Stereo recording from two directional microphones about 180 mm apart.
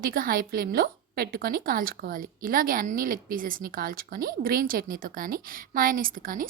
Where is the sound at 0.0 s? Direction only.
55° right (ahead or behind).